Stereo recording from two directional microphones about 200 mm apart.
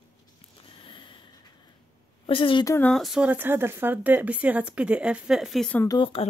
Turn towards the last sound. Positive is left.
turn(degrees=25)  # may be behind; listen again after turning